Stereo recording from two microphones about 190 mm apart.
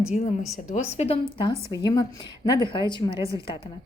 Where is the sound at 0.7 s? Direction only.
35° left (ahead or behind).